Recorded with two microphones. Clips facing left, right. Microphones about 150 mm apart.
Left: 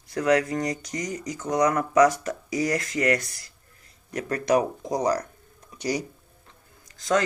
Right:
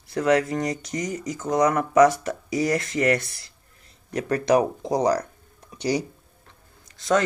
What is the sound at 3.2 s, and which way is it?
Speech, 40° left (ahead or behind).